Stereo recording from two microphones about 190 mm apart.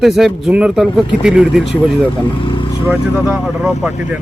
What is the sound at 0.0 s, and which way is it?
Speech, centre (ahead or behind).